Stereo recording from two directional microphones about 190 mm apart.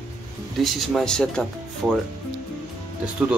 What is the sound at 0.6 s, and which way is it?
Speech, centre (ahead or behind).